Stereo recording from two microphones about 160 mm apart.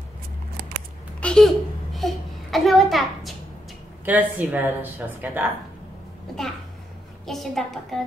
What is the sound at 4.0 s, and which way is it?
Speech, 10° right (ahead or behind).